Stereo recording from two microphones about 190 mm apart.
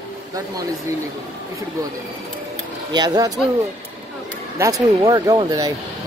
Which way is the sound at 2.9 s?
20° right (ahead or behind).